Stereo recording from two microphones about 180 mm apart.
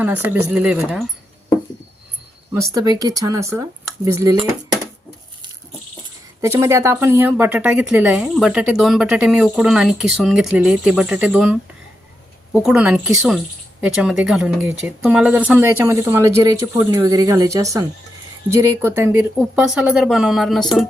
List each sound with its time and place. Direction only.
0.0 s speech: 10° right (ahead or behind)
2.5 s speech: 15° right (ahead or behind)
6.4 s speech: 15° right (ahead or behind)
12.6 s speech: 5° right (ahead or behind)